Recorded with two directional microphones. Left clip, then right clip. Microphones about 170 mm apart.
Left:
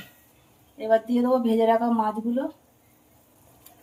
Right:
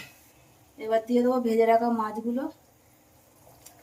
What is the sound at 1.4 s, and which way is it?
Speech, 60° left (ahead or behind).